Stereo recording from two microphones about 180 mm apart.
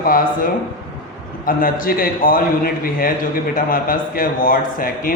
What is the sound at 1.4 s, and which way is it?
A man's voice, 50° left (ahead or behind).